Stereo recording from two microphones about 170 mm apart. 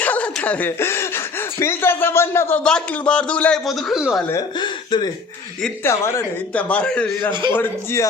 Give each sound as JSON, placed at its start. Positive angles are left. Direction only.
{"t": 0.0, "sound": "speech", "side_deg": 10}
{"t": 4.3, "sound": "speech", "side_deg": 25}
{"t": 5.8, "sound": "a man's voice", "side_deg": 15}